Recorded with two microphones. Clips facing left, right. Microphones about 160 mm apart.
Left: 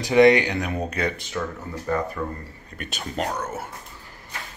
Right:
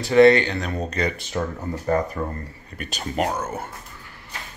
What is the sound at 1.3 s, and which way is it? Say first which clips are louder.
Speech: right 3 dB; 30° right (ahead or behind).